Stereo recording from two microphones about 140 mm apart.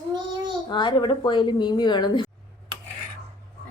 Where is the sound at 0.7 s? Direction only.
35° left (ahead or behind).